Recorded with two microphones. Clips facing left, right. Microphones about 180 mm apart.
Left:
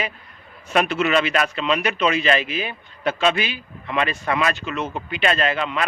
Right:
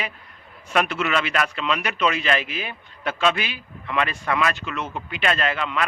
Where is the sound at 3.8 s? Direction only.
20° left (ahead or behind).